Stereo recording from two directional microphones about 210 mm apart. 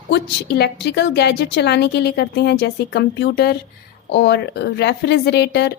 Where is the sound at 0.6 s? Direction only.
55° left (ahead or behind).